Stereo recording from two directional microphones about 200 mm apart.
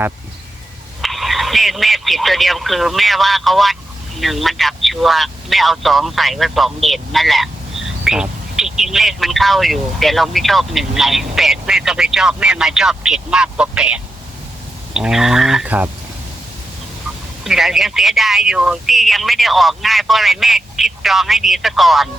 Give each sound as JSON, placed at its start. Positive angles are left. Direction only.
{"t": 1.0, "sound": "speech", "side_deg": 0}
{"t": 17.4, "sound": "speech", "side_deg": 0}